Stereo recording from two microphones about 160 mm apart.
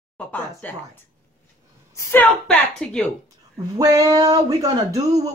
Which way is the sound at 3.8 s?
20° right (ahead or behind).